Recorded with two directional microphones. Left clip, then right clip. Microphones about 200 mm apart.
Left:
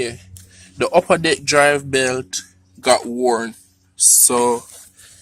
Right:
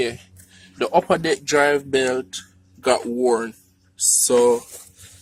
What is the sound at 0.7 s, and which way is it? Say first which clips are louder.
Speech: left 3 dB; 20° left (ahead or behind).